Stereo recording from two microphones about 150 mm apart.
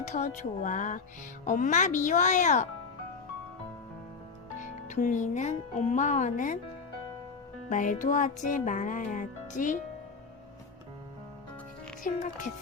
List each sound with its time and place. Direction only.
0.0 s speech: 55° left (ahead or behind)
4.6 s speech: 55° left (ahead or behind)
7.7 s speech: 60° left (ahead or behind)
12.1 s speech: 60° left (ahead or behind)